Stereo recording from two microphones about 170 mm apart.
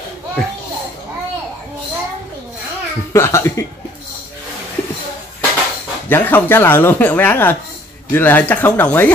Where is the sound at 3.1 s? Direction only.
15° left (ahead or behind).